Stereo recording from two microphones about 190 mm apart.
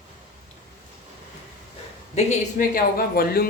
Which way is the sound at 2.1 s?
45° left (ahead or behind).